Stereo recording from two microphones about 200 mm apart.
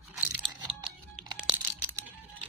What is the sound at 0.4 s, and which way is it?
Crunch, 20° right (ahead or behind).